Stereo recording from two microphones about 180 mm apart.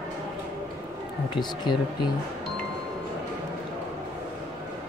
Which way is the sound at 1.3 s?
25° left (ahead or behind).